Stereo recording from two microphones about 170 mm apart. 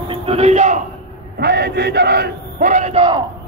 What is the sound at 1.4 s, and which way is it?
Battle cry, 70° right (ahead or behind).